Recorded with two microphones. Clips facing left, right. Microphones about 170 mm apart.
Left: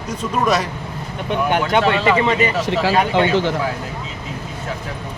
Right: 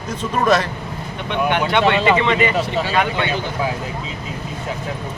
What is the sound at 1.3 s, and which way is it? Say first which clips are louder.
Speech: left 1 dB; 40° left (ahead or behind).